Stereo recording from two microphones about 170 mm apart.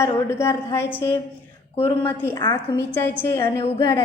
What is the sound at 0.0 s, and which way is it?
Speech, 15° left (ahead or behind).